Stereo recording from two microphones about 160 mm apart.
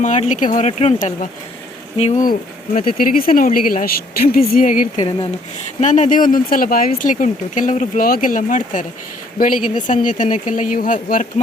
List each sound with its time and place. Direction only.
0.0 s speech: 50° left (ahead or behind)
2.7 s speech: 60° left (ahead or behind)
4.9 s speech: 35° left (ahead or behind)
5.8 s speech: 50° left (ahead or behind)